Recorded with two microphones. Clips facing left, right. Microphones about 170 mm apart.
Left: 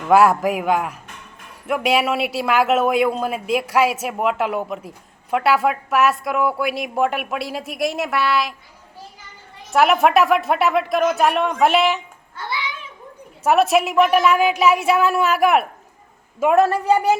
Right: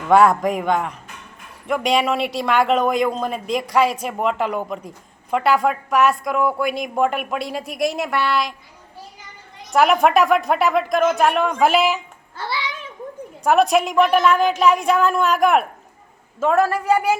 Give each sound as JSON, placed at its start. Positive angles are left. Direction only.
{"t": 0.1, "sound": "speech", "side_deg": 5}
{"t": 9.6, "sound": "speech", "side_deg": 0}
{"t": 13.4, "sound": "speech", "side_deg": 5}
{"t": 16.4, "sound": "a woman's voice", "side_deg": 20}